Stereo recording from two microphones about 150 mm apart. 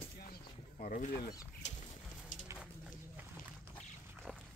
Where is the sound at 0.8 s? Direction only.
60° left (ahead or behind).